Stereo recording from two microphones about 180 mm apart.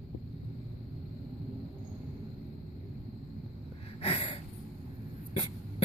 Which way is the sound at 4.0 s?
30° left (ahead or behind).